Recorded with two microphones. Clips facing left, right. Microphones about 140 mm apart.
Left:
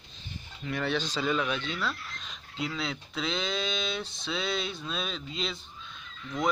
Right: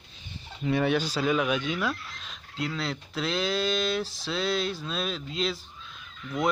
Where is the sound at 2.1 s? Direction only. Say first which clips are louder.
Right 1 dB; centre (ahead or behind).